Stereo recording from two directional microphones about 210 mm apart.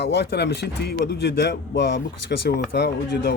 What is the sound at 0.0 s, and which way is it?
Speech, 55° left (ahead or behind).